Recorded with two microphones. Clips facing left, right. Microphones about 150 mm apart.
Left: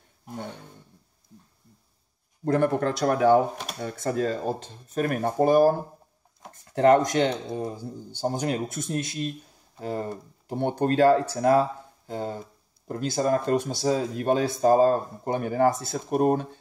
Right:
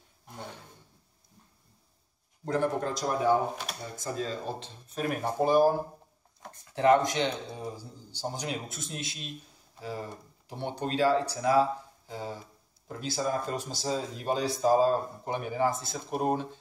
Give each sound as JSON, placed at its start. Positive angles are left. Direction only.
{"t": 2.4, "sound": "speech", "side_deg": 60}